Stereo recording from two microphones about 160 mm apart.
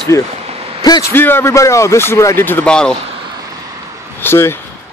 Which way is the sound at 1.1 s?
15° left (ahead or behind).